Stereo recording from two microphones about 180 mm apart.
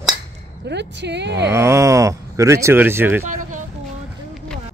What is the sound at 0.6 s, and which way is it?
Speech, 75° right (ahead or behind).